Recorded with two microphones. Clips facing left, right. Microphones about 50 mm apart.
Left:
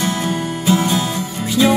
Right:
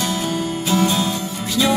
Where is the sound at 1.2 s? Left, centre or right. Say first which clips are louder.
Left 2 dB; centre.